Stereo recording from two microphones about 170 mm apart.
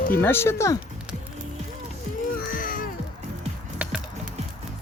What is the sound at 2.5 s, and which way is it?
Music, 55° left (ahead or behind).